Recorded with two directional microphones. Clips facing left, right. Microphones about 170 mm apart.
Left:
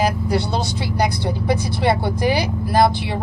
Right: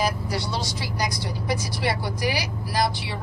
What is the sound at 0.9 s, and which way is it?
Speech, 60° left (ahead or behind).